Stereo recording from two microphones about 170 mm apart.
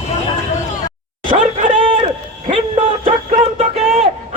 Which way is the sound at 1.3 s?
35° right (ahead or behind).